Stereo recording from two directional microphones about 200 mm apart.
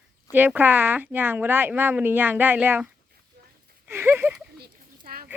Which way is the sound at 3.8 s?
10° right (ahead or behind).